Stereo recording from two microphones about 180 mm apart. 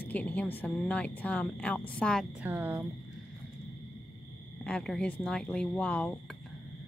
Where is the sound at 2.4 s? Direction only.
10° right (ahead or behind).